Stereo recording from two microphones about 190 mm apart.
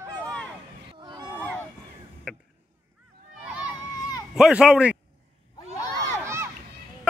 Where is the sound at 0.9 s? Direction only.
20° right (ahead or behind).